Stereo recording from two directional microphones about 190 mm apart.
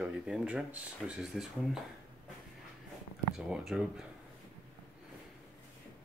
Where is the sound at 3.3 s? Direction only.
Centre (ahead or behind).